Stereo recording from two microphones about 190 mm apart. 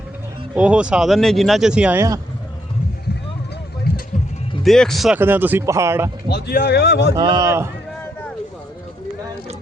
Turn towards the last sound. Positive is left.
turn(degrees=-15)  # may be behind; listen again after turning